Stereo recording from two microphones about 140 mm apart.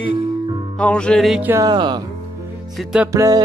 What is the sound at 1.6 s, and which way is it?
Speech, 30° right (ahead or behind).